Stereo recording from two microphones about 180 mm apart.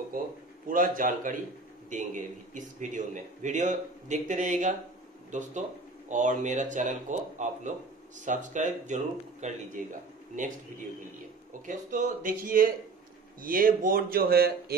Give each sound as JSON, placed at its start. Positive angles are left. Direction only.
{"t": 0.7, "sound": "a man's voice", "side_deg": -50}